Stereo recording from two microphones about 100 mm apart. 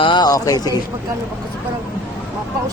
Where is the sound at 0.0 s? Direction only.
50° left (ahead or behind).